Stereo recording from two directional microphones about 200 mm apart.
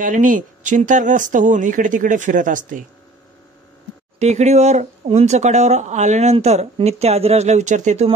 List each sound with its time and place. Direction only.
0.0 s speech: 40° right (ahead or behind)
4.2 s speech: 35° right (ahead or behind)